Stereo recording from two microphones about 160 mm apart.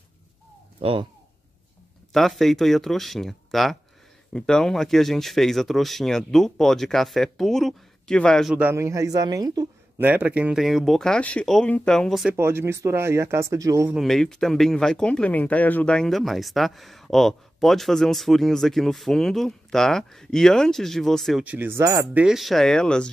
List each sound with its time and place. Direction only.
0.7 s speech: 35° right (ahead or behind)
2.1 s speech: centre (ahead or behind)
8.5 s speech: 15° right (ahead or behind)
9.9 s speech: 10° right (ahead or behind)
12.4 s speech: 15° right (ahead or behind)
13.9 s speech: centre (ahead or behind); by 22.0 s 20° right (ahead or behind)
22.1 s speech: 5° right (ahead or behind)